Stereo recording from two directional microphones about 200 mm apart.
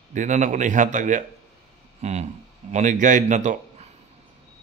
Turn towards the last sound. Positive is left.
turn(degrees=-40)  # may be behind; listen again after turning